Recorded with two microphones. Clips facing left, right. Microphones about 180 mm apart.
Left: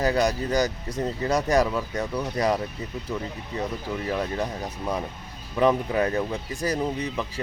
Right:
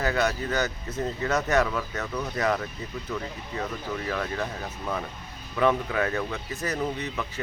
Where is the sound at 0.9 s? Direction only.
35° left (ahead or behind).